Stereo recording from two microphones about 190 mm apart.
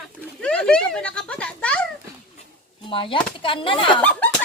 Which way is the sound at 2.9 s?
25° left (ahead or behind).